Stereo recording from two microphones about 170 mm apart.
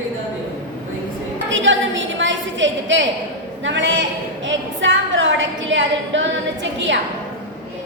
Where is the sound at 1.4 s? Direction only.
90° right.